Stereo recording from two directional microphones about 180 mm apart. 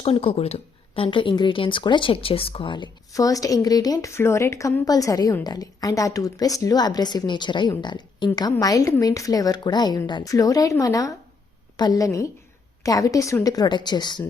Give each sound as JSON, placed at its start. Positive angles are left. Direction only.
{"t": 0.0, "sound": "speech", "side_deg": 30}